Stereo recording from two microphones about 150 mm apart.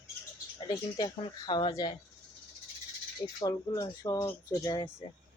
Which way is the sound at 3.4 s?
25° left (ahead or behind).